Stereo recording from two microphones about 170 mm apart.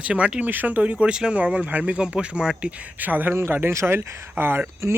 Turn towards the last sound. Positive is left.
turn(degrees=-15)  # may be behind; listen again after turning